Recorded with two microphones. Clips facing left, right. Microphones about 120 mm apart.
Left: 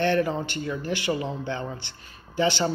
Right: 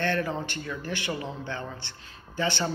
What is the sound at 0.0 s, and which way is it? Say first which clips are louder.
A man's voice: left 5 dB; 15° left (ahead or behind).